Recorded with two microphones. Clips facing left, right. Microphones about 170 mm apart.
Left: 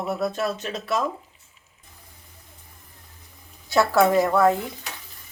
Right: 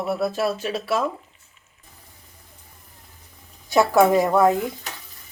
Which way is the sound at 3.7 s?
15° right (ahead or behind).